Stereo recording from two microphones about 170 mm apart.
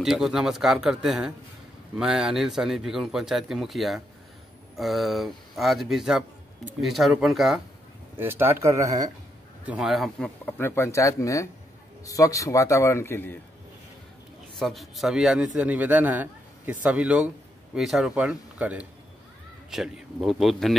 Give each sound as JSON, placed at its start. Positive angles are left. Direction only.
{"t": 0.0, "sound": "a man's voice", "side_deg": 0}
{"t": 8.2, "sound": "speech", "side_deg": -15}
{"t": 9.7, "sound": "speech", "side_deg": -5}
{"t": 14.6, "sound": "a man's voice", "side_deg": 0}